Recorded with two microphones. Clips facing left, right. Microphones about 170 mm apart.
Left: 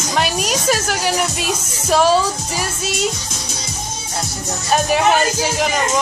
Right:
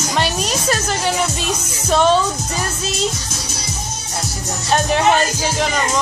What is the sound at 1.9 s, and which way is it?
Music, 5° left (ahead or behind).